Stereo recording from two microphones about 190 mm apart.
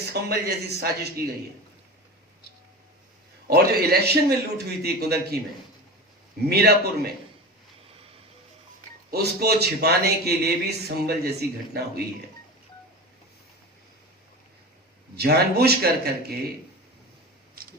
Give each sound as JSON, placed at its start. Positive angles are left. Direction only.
{"t": 0.0, "sound": "a man's voice", "side_deg": -55}
{"t": 3.4, "sound": "a man's voice", "side_deg": -55}
{"t": 6.4, "sound": "a man's voice", "side_deg": -55}
{"t": 9.0, "sound": "a man's voice", "side_deg": -55}
{"t": 15.1, "sound": "a man's voice", "side_deg": -55}
{"t": 17.5, "sound": "a sound", "side_deg": -50}